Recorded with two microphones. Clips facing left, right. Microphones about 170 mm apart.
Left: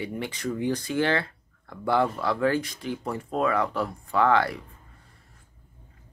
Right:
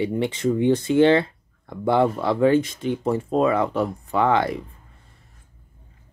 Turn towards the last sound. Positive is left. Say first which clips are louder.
# right 2 dB
turn(degrees=-20)  # may be behind; listen again after turning